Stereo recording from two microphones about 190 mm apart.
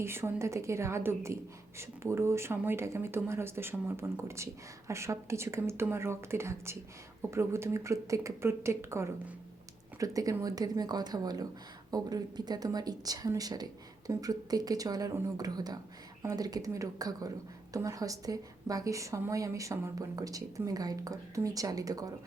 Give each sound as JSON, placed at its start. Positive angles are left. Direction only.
{"t": 0.0, "sound": "a woman's voice", "side_deg": -15}